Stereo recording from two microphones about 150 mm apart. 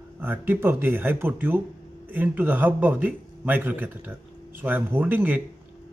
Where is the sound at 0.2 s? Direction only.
15° right (ahead or behind).